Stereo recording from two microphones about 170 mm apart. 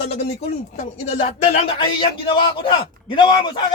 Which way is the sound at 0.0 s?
40° left (ahead or behind).